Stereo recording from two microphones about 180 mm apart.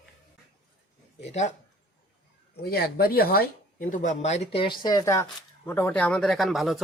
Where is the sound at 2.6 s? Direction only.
60° left (ahead or behind); by 6.8 s centre (ahead or behind).